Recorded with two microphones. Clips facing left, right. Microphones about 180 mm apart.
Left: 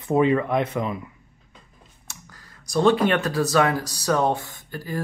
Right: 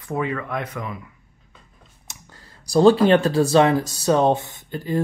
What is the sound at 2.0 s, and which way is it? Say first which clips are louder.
Speech: right 1 dB; 25° right (ahead or behind).